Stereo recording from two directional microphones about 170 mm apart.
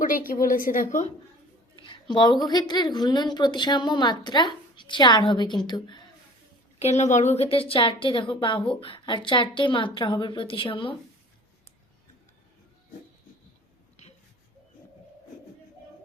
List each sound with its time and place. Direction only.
0.0 s a woman's voice: 55° left (ahead or behind)
1.8 s a sound: 25° left (ahead or behind)
2.5 s a woman's voice: 25° left (ahead or behind)
6.7 s a woman's voice: 40° left (ahead or behind)